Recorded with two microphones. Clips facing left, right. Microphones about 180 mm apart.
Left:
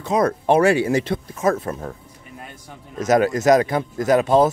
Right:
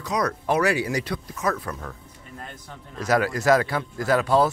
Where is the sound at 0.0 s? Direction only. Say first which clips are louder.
Left 6 dB; 25° left (ahead or behind).